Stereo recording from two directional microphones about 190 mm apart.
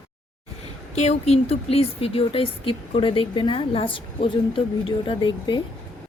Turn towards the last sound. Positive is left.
turn(degrees=25)  # may be behind; listen again after turning